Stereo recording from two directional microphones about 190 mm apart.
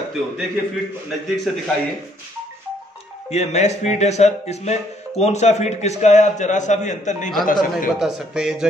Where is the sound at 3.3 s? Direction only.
35° left (ahead or behind).